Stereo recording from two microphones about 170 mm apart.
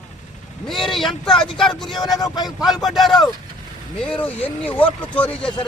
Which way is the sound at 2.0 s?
25° left (ahead or behind).